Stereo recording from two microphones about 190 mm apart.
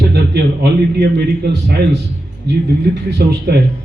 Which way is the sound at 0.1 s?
60° right (ahead or behind).